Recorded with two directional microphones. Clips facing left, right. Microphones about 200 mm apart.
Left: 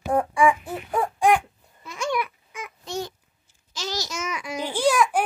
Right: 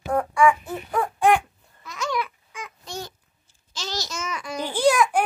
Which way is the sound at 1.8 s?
25° left (ahead or behind).